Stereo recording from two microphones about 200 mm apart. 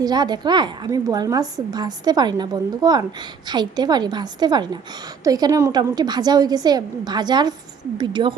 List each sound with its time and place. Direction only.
0.0 s a woman's voice: 20° right (ahead or behind)